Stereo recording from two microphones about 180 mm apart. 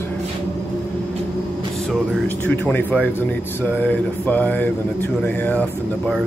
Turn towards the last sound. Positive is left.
turn(degrees=10)  # may be behind; listen again after turning